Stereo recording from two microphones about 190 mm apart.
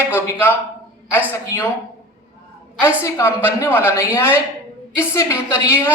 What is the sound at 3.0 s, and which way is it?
A woman's voice, 15° left (ahead or behind).